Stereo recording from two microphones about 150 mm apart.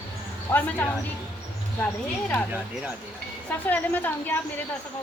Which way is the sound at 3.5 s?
10° left (ahead or behind).